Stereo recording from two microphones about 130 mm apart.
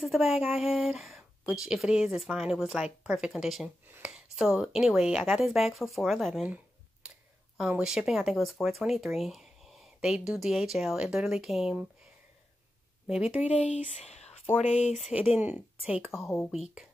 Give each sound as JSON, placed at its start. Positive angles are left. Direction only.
{"t": 0.0, "sound": "speech", "side_deg": 0}
{"t": 7.0, "sound": "a sound", "side_deg": -5}
{"t": 7.5, "sound": "speech", "side_deg": -5}
{"t": 13.0, "sound": "speech", "side_deg": -10}
{"t": 13.7, "sound": "speech", "side_deg": 60}
{"t": 15.0, "sound": "speech", "side_deg": -5}
{"t": 16.1, "sound": "speech", "side_deg": 20}
{"t": 16.5, "sound": "speech", "side_deg": 0}